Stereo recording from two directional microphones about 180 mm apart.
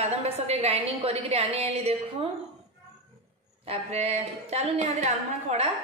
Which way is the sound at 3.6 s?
35° right (ahead or behind).